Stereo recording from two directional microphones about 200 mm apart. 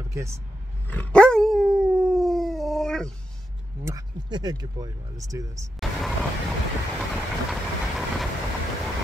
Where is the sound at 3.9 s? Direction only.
20° right (ahead or behind).